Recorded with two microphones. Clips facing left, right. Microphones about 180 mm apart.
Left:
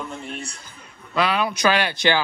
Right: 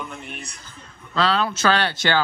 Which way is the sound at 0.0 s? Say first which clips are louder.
Left 3 dB; 30° left (ahead or behind).